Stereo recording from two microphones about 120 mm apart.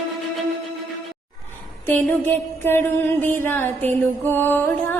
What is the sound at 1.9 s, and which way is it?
Music, 15° left (ahead or behind).